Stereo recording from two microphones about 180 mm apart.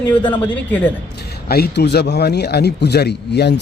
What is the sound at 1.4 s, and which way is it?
A man's voice, 60° left (ahead or behind).